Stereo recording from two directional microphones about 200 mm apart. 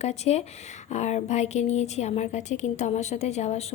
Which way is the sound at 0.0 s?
35° left (ahead or behind).